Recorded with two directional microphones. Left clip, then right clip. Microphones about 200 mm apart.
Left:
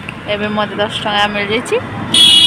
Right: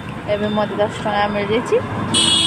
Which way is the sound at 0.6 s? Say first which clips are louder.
Left 3 dB; centre (ahead or behind).